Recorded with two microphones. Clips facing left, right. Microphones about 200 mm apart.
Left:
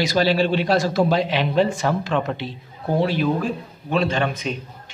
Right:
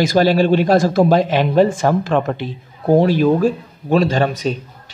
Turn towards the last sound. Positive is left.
turn(degrees=-40)  # may be behind; listen again after turning